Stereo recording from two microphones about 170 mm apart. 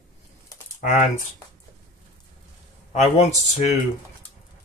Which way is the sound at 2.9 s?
40° left (ahead or behind).